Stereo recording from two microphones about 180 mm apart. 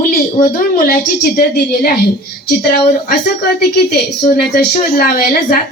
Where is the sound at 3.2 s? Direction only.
60° left (ahead or behind).